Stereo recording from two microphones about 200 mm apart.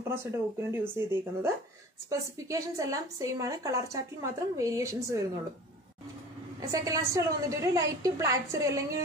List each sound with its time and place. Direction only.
0.1 s a woman's voice: 15° right (ahead or behind)
6.6 s a woman's voice: 15° right (ahead or behind)